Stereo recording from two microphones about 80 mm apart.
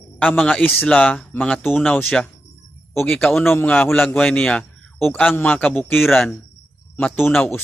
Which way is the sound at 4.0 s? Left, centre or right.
Centre.